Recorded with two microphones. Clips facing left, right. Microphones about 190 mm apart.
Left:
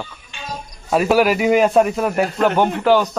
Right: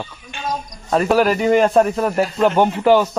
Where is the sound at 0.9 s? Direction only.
5° left (ahead or behind).